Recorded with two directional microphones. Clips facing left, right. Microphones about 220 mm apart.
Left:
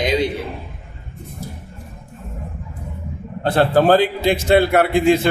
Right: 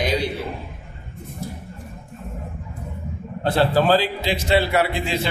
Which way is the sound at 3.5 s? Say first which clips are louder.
Left 4 dB; 50° left (ahead or behind).